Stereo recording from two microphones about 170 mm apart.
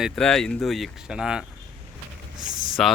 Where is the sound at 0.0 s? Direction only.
5° left (ahead or behind).